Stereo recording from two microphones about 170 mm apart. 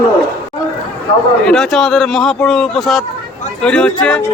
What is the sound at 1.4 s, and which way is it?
A man's voice, centre (ahead or behind).